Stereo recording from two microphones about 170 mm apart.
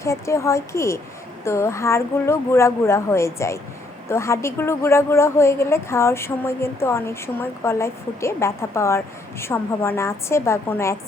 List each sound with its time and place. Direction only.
0.0 s a woman's voice: 15° left (ahead or behind)